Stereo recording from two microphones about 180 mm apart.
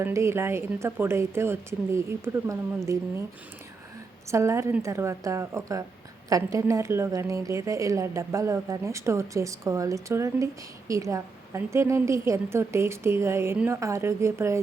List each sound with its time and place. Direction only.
0.0 s a woman's voice: 15° right (ahead or behind)
4.3 s a woman's voice: 15° right (ahead or behind)